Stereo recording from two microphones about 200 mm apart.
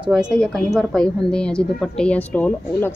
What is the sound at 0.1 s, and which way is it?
A woman's voice, centre (ahead or behind).